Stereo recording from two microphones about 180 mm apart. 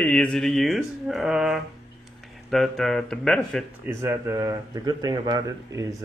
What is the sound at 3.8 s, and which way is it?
Speech, 15° right (ahead or behind).